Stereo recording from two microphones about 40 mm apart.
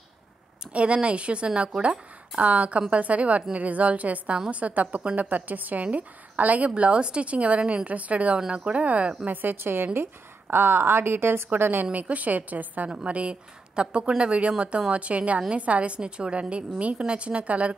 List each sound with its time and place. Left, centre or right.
0.7 s a woman's voice: right
6.7 s a woman's voice: right
9.3 s a woman's voice: right
11.9 s a woman's voice: right
13.0 s a woman's voice: right